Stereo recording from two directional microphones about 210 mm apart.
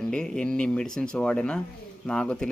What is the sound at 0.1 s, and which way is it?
Speech, 5° left (ahead or behind).